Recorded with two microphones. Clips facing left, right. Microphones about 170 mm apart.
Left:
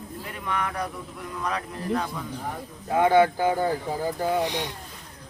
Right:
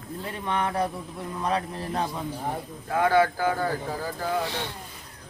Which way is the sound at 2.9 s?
20° left (ahead or behind).